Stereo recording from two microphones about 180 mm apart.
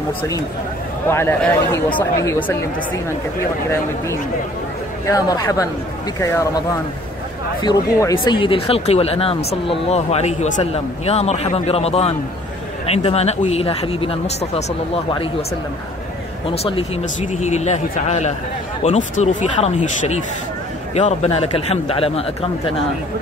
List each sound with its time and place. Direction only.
1.0 s speech: 15° left (ahead or behind)
5.0 s speech: 20° left (ahead or behind)
7.6 s speech: 20° left (ahead or behind)
16.4 s speech: 30° left (ahead or behind)